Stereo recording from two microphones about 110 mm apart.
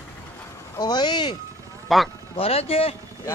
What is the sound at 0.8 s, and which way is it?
Speech, 40° left (ahead or behind).